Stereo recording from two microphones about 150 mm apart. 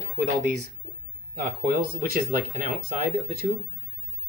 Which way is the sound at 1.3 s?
90° right.